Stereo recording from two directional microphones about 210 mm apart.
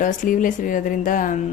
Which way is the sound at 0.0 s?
40° left (ahead or behind).